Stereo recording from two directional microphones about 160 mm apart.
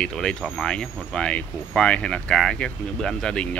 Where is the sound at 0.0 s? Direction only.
5° left (ahead or behind).